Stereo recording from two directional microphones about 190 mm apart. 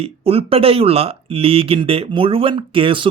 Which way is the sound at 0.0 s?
30° right (ahead or behind).